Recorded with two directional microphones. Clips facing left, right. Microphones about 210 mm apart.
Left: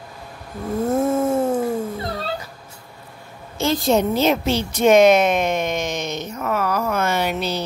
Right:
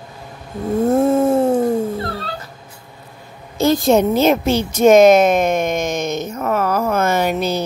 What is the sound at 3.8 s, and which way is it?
A woman's voice, 50° right (ahead or behind).